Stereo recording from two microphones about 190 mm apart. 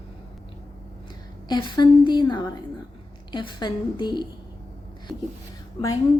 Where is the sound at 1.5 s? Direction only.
25° left (ahead or behind).